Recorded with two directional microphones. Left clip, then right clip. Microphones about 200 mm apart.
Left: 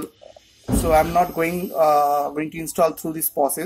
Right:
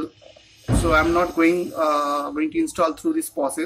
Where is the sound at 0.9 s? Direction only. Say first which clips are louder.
Left 2 dB; 45° left (ahead or behind).